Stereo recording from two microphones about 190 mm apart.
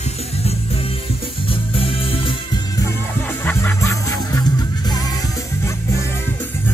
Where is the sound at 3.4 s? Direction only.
10° left (ahead or behind).